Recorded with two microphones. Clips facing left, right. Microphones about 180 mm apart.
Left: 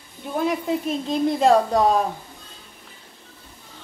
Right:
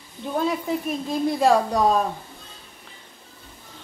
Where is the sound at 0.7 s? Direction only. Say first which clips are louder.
Left 2 dB; 20° left (ahead or behind).